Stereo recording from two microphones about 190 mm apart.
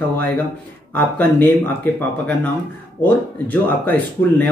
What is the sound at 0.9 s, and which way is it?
Speech, 10° left (ahead or behind).